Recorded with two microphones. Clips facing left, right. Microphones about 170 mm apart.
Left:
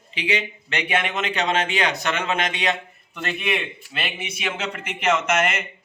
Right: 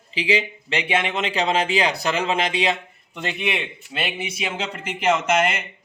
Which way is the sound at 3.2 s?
20° right (ahead or behind).